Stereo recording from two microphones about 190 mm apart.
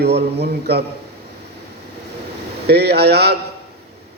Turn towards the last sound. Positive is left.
turn(degrees=-60)  # may be behind; listen again after turning